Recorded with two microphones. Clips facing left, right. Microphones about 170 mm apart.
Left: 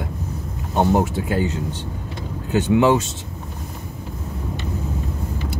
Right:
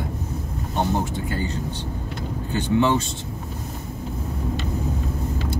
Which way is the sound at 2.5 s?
90° left.